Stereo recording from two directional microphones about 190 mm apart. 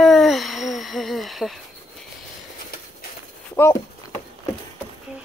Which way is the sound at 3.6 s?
10° left (ahead or behind).